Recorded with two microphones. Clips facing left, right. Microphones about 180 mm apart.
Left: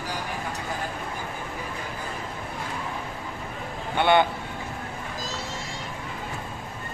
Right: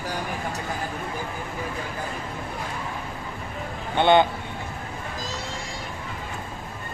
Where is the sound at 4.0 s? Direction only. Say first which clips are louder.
Right 2 dB; 20° right (ahead or behind).